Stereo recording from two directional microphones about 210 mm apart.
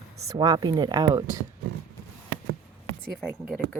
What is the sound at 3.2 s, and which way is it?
Speech, centre (ahead or behind).